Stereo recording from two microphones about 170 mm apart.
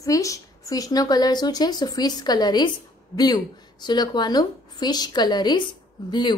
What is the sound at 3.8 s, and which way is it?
Speech, 25° left (ahead or behind).